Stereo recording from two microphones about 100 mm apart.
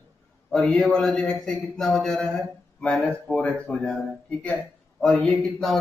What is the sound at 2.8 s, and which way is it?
A man's voice, 10° left (ahead or behind).